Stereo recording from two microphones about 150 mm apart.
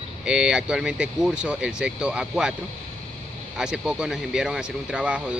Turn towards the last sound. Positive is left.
turn(degrees=-5)  # may be behind; listen again after turning